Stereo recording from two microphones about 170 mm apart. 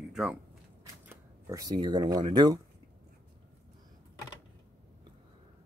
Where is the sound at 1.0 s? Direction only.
15° right (ahead or behind).